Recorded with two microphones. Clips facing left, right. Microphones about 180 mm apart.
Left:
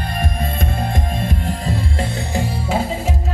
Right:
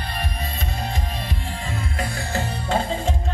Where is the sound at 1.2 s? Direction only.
45° left (ahead or behind).